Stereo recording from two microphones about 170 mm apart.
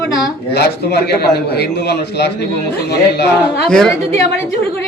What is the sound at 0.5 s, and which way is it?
A man's voice, 75° left (ahead or behind).